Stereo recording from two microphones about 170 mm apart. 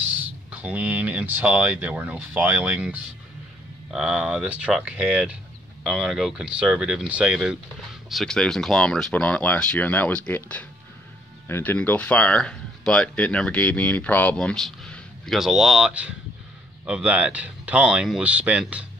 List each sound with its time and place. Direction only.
0.2 s speech: 10° right (ahead or behind)